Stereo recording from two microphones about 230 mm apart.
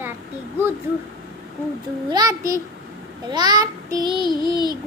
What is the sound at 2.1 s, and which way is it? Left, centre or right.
Child singing, centre.